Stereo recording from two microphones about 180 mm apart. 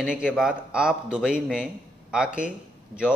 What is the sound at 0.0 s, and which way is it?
A man's voice, 5° right (ahead or behind).